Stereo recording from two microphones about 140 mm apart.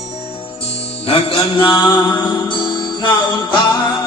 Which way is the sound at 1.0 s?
40° left (ahead or behind).